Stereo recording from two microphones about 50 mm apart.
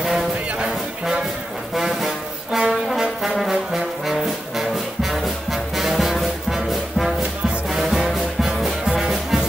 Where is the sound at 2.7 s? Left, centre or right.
Centre.